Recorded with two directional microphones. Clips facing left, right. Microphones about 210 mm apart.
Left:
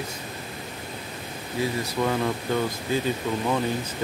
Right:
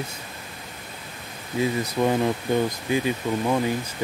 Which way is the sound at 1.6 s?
15° right (ahead or behind).